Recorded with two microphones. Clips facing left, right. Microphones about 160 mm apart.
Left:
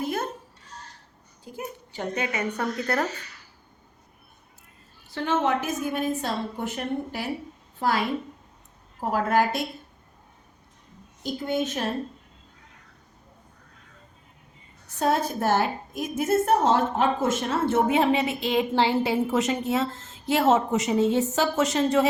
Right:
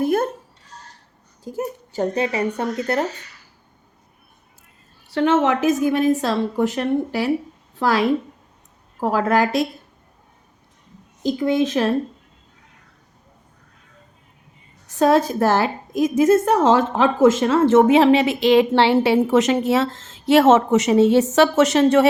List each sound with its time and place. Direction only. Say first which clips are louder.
0.0 s a sound: right 9 dB; 55° right (ahead or behind)
1.5 s speech: right 10 dB; 40° right (ahead or behind); by 3.1 s 20° right (ahead or behind)
5.1 s a woman's voice: right 7 dB; 85° right
11.2 s a woman's voice: right 8 dB; 90° right
14.8 s a woman's voice: right 8 dB; 90° right